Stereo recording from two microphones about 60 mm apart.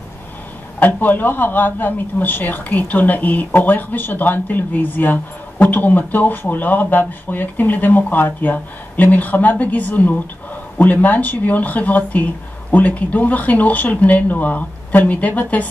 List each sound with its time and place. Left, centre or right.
0.7 s speech: left